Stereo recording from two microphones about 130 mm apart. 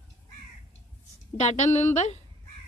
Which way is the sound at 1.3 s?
60° left (ahead or behind).